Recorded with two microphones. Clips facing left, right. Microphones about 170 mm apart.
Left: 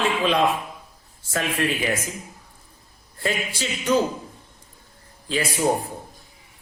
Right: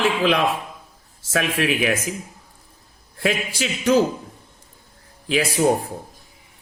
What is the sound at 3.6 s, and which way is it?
Speech, 75° right (ahead or behind).